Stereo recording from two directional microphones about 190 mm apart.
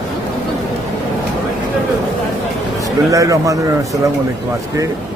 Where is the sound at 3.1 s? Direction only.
15° right (ahead or behind).